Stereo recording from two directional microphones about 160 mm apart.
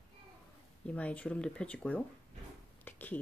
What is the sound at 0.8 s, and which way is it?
Speech, 10° left (ahead or behind).